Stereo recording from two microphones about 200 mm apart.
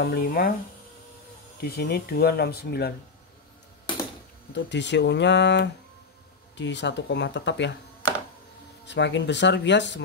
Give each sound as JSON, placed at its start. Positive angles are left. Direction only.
{"t": 0.0, "sound": "speech", "side_deg": 50}
{"t": 1.6, "sound": "speech", "side_deg": 50}
{"t": 4.6, "sound": "speech", "side_deg": 60}
{"t": 8.8, "sound": "speech", "side_deg": 60}